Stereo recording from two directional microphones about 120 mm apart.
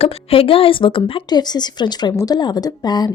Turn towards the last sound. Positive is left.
turn(degrees=35)  # may be behind; listen again after turning